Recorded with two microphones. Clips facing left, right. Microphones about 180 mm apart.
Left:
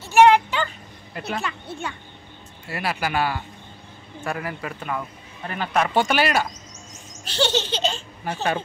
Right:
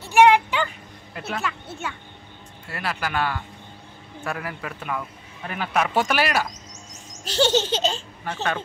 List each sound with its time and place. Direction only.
0.1 s a sound: 15° right (ahead or behind)
1.1 s speech: 5° right (ahead or behind)
2.7 s speech: 10° left (ahead or behind)
7.2 s baby laughter: 45° right (ahead or behind)
8.3 s speech: 15° left (ahead or behind)